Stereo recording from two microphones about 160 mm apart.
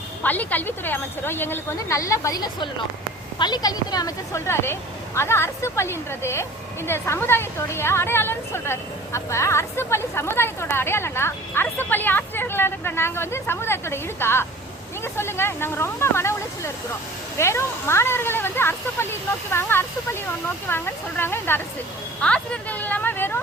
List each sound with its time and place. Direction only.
0.2 s a woman's voice: 10° left (ahead or behind)
17.3 s a woman's voice: 15° left (ahead or behind)
22.2 s a sound: 10° left (ahead or behind)